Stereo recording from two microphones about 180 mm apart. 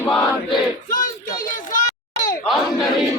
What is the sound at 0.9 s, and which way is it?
Child singing, 45° left (ahead or behind).